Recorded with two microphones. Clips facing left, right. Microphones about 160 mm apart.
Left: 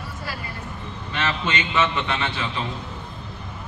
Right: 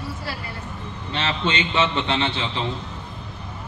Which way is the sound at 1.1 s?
30° right (ahead or behind).